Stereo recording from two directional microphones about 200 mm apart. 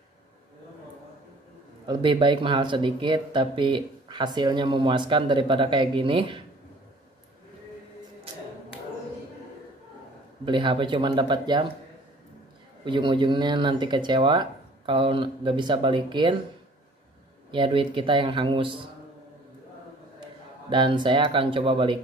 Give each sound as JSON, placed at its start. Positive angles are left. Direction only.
{"t": 1.9, "sound": "speech", "side_deg": -25}
{"t": 10.4, "sound": "speech", "side_deg": -25}
{"t": 12.8, "sound": "speech", "side_deg": -25}
{"t": 17.5, "sound": "speech", "side_deg": -25}
{"t": 20.7, "sound": "speech", "side_deg": -25}